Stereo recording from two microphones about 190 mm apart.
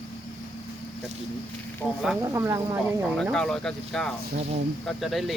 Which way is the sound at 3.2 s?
Centre (ahead or behind).